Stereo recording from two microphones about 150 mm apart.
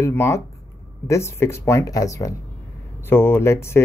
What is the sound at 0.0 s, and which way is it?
Speech, 15° left (ahead or behind).